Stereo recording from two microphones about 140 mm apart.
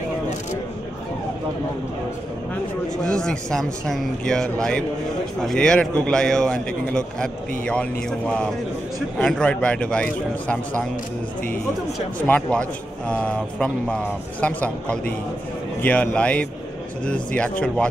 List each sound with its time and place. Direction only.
3.0 s a man's voice: 5° left (ahead or behind)
12.3 s a man's voice: 10° left (ahead or behind)